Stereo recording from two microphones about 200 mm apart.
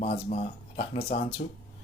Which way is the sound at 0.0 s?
35° left (ahead or behind).